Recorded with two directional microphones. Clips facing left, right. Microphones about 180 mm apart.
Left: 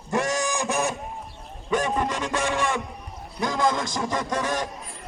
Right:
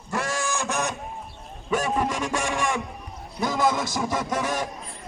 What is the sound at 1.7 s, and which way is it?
Speech, 5° right (ahead or behind).